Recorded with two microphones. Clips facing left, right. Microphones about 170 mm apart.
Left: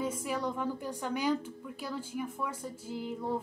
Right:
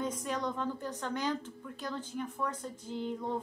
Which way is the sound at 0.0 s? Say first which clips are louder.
Left 1 dB; 5° left (ahead or behind).